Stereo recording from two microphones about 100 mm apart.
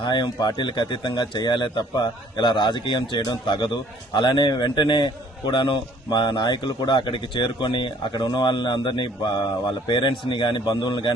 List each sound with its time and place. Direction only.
0.0 s speech: 45° left (ahead or behind)